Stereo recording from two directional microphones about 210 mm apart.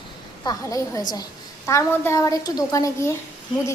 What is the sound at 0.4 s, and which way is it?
A woman's voice, 15° left (ahead or behind).